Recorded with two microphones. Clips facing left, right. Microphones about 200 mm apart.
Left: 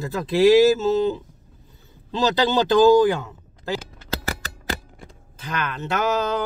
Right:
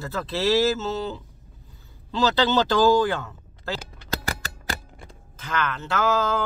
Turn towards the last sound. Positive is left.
turn(degrees=20)  # may be behind; listen again after turning